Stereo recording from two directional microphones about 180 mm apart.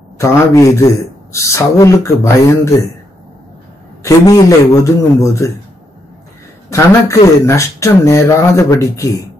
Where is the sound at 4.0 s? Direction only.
20° left (ahead or behind).